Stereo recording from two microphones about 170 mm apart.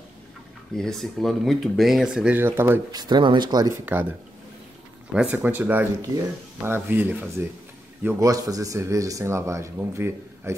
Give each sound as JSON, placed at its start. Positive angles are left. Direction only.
{"t": 0.7, "sound": "speech", "side_deg": 0}
{"t": 3.0, "sound": "speech", "side_deg": -25}
{"t": 5.1, "sound": "speech", "side_deg": -10}